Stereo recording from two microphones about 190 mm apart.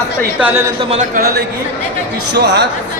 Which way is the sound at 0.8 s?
35° right (ahead or behind).